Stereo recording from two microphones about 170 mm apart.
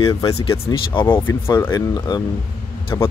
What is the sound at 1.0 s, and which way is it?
Speech, 15° left (ahead or behind).